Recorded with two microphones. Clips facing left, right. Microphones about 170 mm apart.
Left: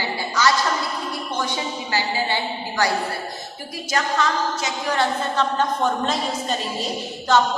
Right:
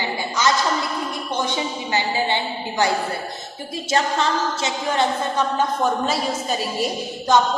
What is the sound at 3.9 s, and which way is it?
A woman's voice, 30° right (ahead or behind).